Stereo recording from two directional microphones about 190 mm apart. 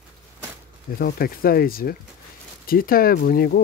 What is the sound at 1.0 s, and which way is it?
Speech, 50° left (ahead or behind).